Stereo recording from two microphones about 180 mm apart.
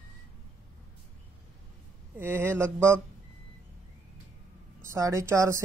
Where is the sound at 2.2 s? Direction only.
10° right (ahead or behind).